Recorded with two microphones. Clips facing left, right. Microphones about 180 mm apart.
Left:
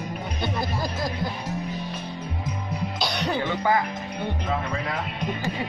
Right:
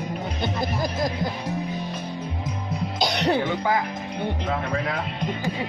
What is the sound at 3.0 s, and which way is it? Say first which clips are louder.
Music: right 5 dB; 20° right (ahead or behind).